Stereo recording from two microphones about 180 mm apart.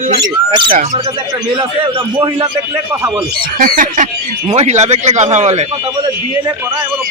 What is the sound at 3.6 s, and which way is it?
Bird, 50° right (ahead or behind).